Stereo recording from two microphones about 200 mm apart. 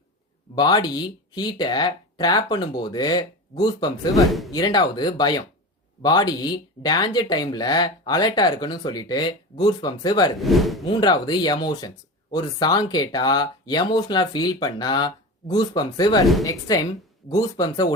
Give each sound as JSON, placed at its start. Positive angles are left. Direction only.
{"t": 0.5, "sound": "speech", "side_deg": 20}
{"t": 4.3, "sound": "speech", "side_deg": 0}
{"t": 4.5, "sound": "speech", "side_deg": 20}
{"t": 10.3, "sound": "speech", "side_deg": 0}
{"t": 10.8, "sound": "speech", "side_deg": 20}